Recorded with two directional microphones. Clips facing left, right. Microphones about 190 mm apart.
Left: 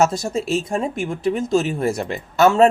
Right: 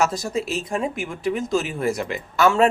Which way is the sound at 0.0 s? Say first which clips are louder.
Left 4 dB; 25° left (ahead or behind).